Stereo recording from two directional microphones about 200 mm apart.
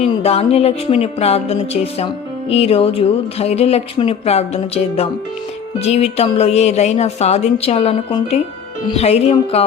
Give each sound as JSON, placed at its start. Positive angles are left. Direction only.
{"t": 0.0, "sound": "speech", "side_deg": 30}